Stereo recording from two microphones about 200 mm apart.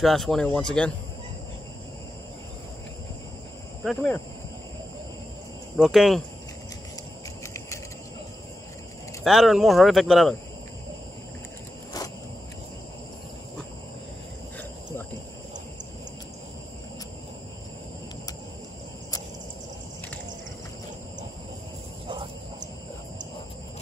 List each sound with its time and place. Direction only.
0.0 s speech: centre (ahead or behind)
3.8 s speech: centre (ahead or behind)
5.8 s speech: centre (ahead or behind)
9.2 s speech: centre (ahead or behind)
22.0 s a sound: 25° right (ahead or behind)